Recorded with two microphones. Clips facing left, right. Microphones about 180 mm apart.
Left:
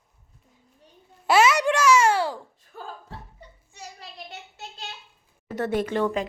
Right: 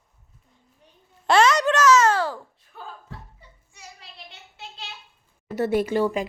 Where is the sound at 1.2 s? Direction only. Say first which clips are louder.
Right 1 dB; 5° left (ahead or behind).